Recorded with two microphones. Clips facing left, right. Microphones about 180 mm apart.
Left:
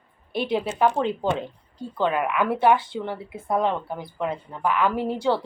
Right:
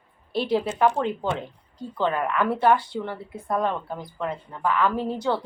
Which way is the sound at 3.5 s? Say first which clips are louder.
Left 2 dB; 20° left (ahead or behind).